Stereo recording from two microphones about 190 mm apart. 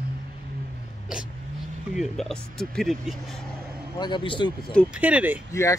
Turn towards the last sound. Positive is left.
turn(degrees=15)  # may be behind; listen again after turning